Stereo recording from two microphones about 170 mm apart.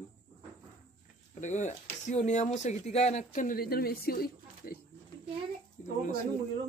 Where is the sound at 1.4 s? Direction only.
45° left (ahead or behind); by 4.7 s 65° left (ahead or behind).